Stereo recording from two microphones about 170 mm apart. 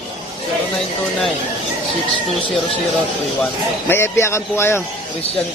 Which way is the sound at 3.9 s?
15° left (ahead or behind).